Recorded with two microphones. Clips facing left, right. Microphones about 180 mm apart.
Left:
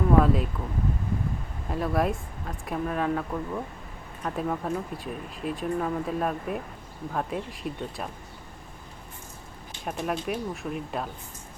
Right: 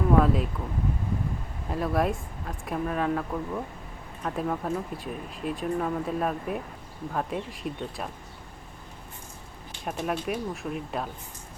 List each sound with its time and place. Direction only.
0.1 s speech: centre (ahead or behind)
1.6 s speech: centre (ahead or behind)
9.8 s speech: centre (ahead or behind)